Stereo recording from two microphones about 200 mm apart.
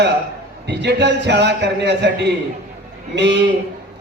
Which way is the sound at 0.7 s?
60° right (ahead or behind).